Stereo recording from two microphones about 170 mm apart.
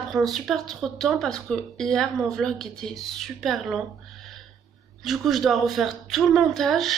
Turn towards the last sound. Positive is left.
turn(degrees=0)  # may be behind; listen again after turning